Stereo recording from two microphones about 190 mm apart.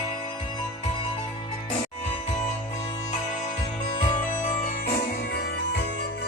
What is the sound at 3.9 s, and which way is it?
Music, 25° left (ahead or behind).